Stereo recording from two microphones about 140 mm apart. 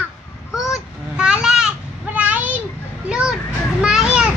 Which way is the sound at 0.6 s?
5° right (ahead or behind).